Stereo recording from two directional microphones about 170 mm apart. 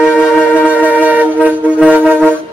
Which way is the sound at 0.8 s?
10° right (ahead or behind).